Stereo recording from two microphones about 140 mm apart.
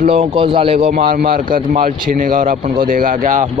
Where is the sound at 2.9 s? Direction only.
80° right.